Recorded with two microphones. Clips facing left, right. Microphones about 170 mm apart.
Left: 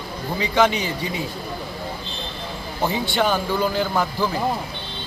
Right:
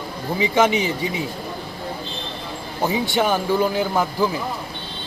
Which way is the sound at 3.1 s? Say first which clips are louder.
Right 2 dB; 15° right (ahead or behind).